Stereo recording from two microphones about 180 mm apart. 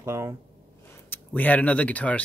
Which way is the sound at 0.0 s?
15° right (ahead or behind).